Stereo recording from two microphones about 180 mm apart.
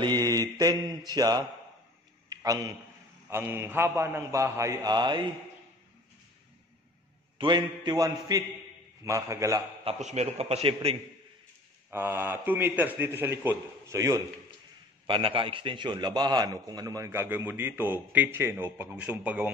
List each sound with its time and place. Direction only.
0.3 s a sound: 20° right (ahead or behind)
3.3 s a man's voice: 15° right (ahead or behind)
7.3 s a man's voice: 25° right (ahead or behind)
9.8 s a man's voice: 40° right (ahead or behind)
11.9 s a man's voice: 10° right (ahead or behind)
15.0 s a man's voice: 30° right (ahead or behind); by 19.5 s 10° right (ahead or behind)